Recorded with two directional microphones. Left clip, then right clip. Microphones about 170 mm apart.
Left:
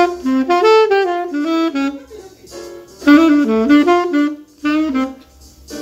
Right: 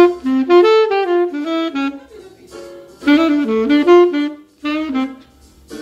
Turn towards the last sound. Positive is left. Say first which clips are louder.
# left 3 dB
turn(degrees=40)  # may be behind; listen again after turning